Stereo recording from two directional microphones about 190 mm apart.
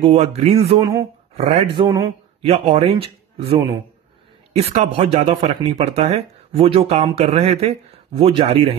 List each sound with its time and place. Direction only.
0.0 s speech: 35° right (ahead or behind)
2.4 s speech: 35° right (ahead or behind)